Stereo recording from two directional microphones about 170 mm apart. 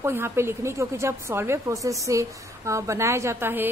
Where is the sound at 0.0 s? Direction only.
15° right (ahead or behind).